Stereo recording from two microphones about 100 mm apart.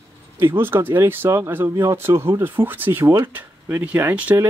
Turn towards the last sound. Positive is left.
turn(degrees=-15)  # may be behind; listen again after turning